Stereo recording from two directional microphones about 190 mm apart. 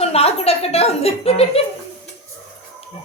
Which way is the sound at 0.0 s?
30° left (ahead or behind).